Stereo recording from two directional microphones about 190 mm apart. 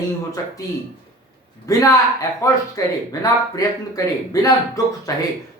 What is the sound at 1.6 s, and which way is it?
Speech, 15° left (ahead or behind).